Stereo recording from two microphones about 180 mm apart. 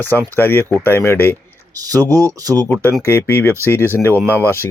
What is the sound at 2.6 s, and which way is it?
Speech, 10° left (ahead or behind).